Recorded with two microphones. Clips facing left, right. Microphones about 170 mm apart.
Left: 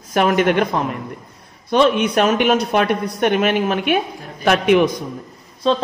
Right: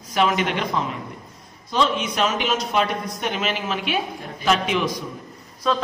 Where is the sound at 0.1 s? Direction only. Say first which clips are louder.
Left 6 dB; 55° left (ahead or behind).